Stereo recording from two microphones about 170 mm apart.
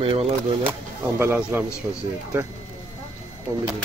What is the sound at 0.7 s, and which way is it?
Speech, 10° right (ahead or behind).